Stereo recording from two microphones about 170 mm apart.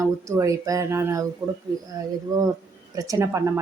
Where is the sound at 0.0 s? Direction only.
20° right (ahead or behind).